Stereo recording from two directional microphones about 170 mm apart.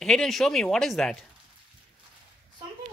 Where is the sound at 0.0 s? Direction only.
5° left (ahead or behind).